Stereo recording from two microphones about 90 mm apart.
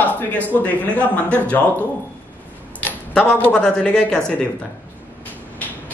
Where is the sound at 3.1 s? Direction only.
10° left (ahead or behind).